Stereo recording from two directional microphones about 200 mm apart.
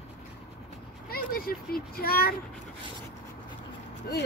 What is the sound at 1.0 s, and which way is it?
A child's voice, 45° left (ahead or behind).